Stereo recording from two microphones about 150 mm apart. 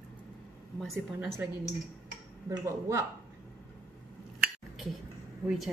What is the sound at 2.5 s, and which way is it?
Speech, 20° right (ahead or behind).